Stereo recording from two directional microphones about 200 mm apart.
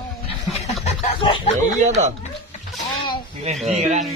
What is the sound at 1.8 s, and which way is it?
Speech, 35° right (ahead or behind).